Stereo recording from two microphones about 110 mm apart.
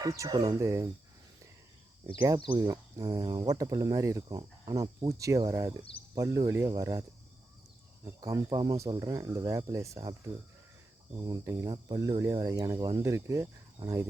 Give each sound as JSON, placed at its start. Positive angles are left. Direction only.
{"t": 0.0, "sound": "speech", "side_deg": -35}
{"t": 2.6, "sound": "speech", "side_deg": -30}
{"t": 8.0, "sound": "speech", "side_deg": -30}
{"t": 11.3, "sound": "speech", "side_deg": -30}